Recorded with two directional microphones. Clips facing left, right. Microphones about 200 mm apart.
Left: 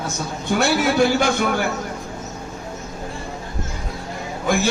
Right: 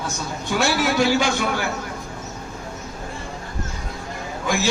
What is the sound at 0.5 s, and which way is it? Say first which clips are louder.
A man's voice: left 2 dB; 55° left (ahead or behind).